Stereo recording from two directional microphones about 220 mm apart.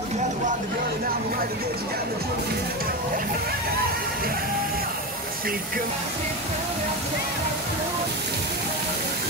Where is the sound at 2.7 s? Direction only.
40° right (ahead or behind).